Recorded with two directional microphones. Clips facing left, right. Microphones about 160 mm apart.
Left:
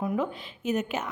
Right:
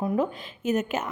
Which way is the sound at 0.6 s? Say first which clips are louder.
Right 3 dB; 45° right (ahead or behind).